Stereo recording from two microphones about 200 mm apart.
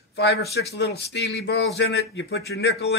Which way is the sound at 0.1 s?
55° left (ahead or behind).